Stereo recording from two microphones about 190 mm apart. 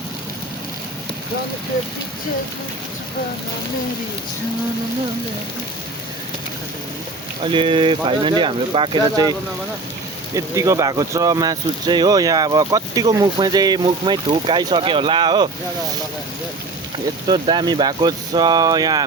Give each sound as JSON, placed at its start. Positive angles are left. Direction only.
{"t": 7.4, "sound": "speech", "side_deg": -25}
{"t": 10.3, "sound": "speech", "side_deg": -15}
{"t": 17.2, "sound": "speech", "side_deg": -25}